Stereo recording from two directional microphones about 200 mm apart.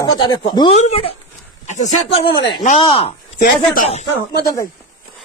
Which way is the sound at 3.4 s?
45° left (ahead or behind).